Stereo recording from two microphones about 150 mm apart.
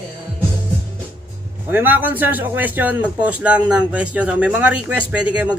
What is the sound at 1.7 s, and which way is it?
A man's voice, 15° right (ahead or behind).